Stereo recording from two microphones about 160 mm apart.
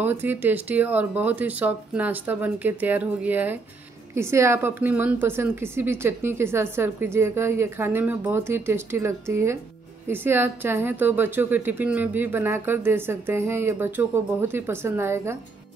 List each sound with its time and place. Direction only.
0.0 s a woman's voice: 10° right (ahead or behind)